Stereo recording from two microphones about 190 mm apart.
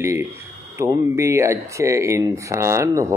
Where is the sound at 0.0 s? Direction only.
15° right (ahead or behind).